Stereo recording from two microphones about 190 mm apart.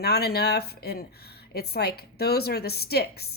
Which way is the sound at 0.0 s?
55° left (ahead or behind).